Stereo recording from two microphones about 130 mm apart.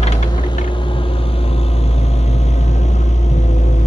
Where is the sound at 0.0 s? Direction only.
55° left (ahead or behind).